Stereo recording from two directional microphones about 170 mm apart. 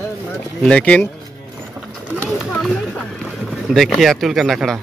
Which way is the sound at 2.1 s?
Centre (ahead or behind).